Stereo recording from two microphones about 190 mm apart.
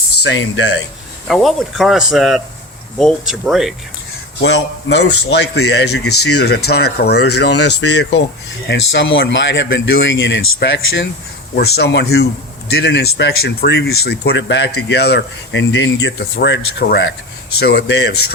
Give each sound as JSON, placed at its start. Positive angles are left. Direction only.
{"t": 0.2, "sound": "speech", "side_deg": 75}
{"t": 1.3, "sound": "speech", "side_deg": 0}
{"t": 4.4, "sound": "speech", "side_deg": 65}